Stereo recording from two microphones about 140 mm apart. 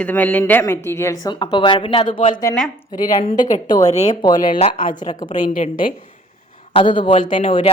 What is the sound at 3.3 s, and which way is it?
Speech, 65° left (ahead or behind).